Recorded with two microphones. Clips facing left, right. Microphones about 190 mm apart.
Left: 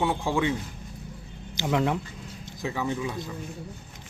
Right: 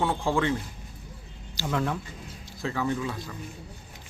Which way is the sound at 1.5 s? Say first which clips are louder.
Left 3 dB; 15° left (ahead or behind).